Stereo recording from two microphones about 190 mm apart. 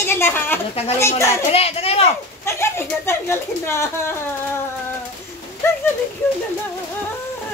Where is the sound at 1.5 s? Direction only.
30° left (ahead or behind).